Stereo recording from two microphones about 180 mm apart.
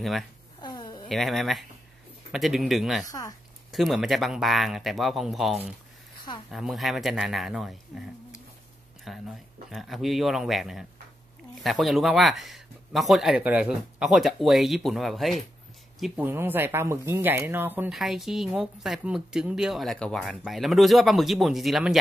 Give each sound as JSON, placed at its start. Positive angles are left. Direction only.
{"t": 0.6, "sound": "cat", "side_deg": 20}
{"t": 1.0, "sound": "speech", "side_deg": 0}
{"t": 3.1, "sound": "speech", "side_deg": 20}
{"t": 3.7, "sound": "speech", "side_deg": 0}
{"t": 9.1, "sound": "speech", "side_deg": 0}
{"t": 16.2, "sound": "speech", "side_deg": -10}